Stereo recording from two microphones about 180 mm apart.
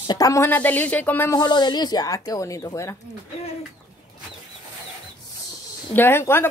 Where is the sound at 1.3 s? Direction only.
25° left (ahead or behind).